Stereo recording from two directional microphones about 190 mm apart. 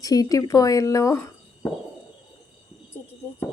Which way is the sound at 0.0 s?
20° left (ahead or behind).